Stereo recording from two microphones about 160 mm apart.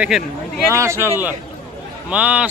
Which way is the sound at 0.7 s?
20° right (ahead or behind).